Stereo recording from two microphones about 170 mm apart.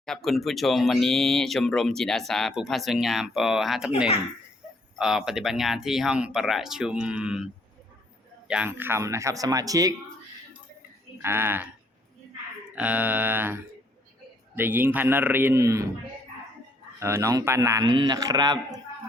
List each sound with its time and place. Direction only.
0.0 s speech: centre (ahead or behind)
8.4 s a man's voice: 10° right (ahead or behind)
11.2 s a man's voice: 15° right (ahead or behind)
12.7 s a man's voice: 10° right (ahead or behind)
17.0 s a man's voice: 15° right (ahead or behind)